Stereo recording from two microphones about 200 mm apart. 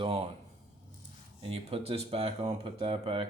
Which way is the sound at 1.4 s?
30° right (ahead or behind).